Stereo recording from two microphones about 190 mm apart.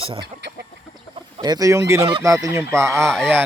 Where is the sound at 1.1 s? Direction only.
20° right (ahead or behind).